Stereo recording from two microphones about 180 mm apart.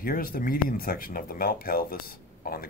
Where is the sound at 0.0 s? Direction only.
50° left (ahead or behind).